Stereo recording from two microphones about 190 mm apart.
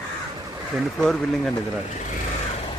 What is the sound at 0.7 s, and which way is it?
Speech, centre (ahead or behind).